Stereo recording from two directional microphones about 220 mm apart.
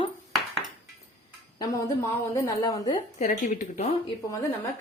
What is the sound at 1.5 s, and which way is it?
A woman's voice, 15° left (ahead or behind).